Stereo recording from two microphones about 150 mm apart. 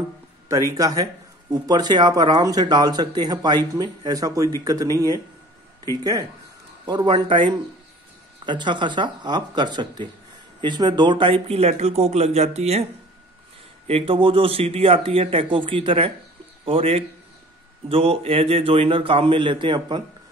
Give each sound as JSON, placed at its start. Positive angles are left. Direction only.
{"t": 0.5, "sound": "speech", "side_deg": -25}
{"t": 6.9, "sound": "speech", "side_deg": -25}
{"t": 13.8, "sound": "speech", "side_deg": -40}